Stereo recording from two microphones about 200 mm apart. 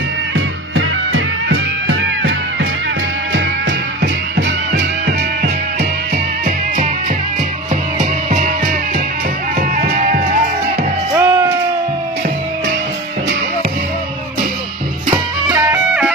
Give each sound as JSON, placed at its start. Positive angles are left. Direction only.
{"t": 0.7, "sound": "music", "side_deg": -85}
{"t": 3.3, "sound": "music", "side_deg": -65}
{"t": 9.6, "sound": "music", "side_deg": -45}
{"t": 11.1, "sound": "music", "side_deg": -15}
{"t": 15.0, "sound": "music", "side_deg": -20}
{"t": 15.7, "sound": "music", "side_deg": -5}